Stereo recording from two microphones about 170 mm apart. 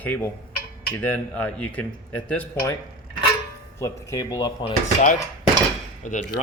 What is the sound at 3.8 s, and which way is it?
Speech, 20° left (ahead or behind).